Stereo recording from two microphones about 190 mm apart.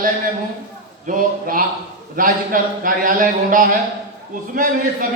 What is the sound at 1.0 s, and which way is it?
A man's voice, 45° right (ahead or behind).